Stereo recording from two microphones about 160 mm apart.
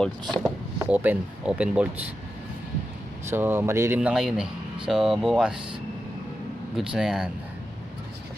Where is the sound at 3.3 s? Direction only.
15° right (ahead or behind).